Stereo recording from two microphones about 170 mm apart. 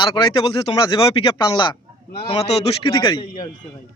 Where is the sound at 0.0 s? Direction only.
30° left (ahead or behind).